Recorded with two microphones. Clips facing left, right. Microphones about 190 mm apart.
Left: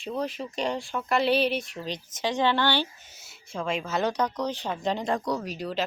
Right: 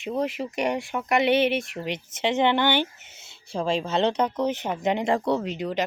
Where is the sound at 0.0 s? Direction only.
20° right (ahead or behind).